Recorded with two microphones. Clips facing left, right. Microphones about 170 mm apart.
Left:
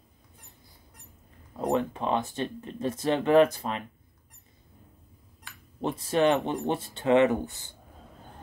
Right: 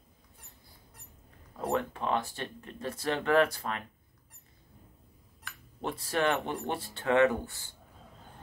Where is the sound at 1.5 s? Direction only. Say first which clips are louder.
Left 4 dB; 15° left (ahead or behind).